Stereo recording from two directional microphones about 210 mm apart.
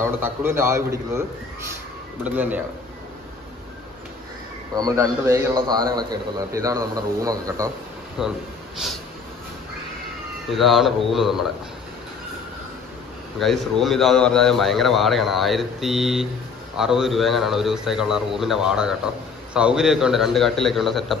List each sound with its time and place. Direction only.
0.0 s a man's voice: 10° right (ahead or behind)
2.2 s a man's voice: 5° right (ahead or behind)
4.7 s a man's voice: 15° right (ahead or behind)
8.2 s speech: 5° right (ahead or behind)
10.5 s speech: centre (ahead or behind)
13.4 s speech: centre (ahead or behind)